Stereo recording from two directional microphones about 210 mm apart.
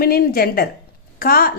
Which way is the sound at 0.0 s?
45° left (ahead or behind).